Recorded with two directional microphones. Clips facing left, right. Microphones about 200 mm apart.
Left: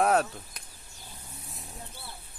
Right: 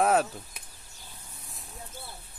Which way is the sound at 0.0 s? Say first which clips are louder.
Even; centre (ahead or behind).